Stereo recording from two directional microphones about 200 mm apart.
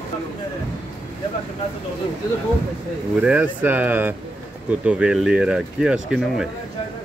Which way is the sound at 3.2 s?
5° right (ahead or behind).